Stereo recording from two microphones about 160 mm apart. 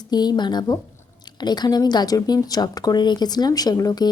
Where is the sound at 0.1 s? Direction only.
25° left (ahead or behind).